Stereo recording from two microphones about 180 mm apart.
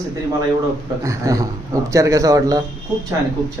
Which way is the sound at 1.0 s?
15° right (ahead or behind).